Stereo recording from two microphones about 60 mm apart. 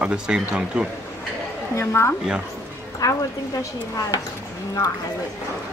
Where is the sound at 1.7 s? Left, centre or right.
Left.